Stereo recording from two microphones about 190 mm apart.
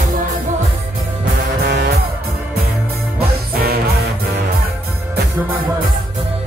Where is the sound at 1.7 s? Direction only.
60° right (ahead or behind).